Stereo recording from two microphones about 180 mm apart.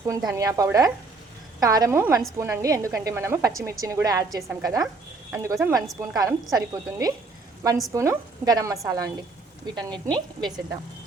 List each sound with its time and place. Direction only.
0.0 s a woman's voice: 15° right (ahead or behind)